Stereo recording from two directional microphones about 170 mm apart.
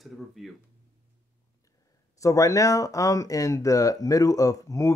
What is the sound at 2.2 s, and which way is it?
Speech, 20° left (ahead or behind).